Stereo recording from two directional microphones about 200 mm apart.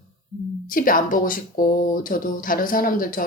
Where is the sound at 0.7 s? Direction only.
45° left (ahead or behind).